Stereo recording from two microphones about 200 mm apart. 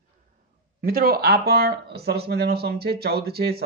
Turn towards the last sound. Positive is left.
turn(degrees=-50)  # may be behind; listen again after turning